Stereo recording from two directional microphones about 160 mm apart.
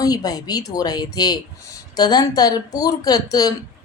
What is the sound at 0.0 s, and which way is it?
A woman's voice, 25° left (ahead or behind).